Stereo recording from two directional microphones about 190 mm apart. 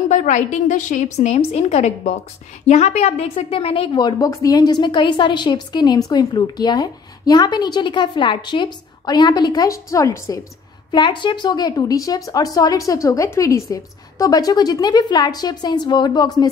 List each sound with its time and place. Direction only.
0.1 s a woman's voice: 40° left (ahead or behind); by 16.4 s 20° left (ahead or behind)